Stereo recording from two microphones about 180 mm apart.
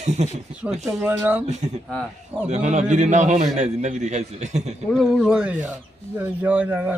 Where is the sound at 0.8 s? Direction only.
Centre (ahead or behind).